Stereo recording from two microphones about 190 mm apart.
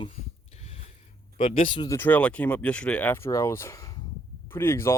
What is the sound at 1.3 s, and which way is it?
Speech, 30° left (ahead or behind).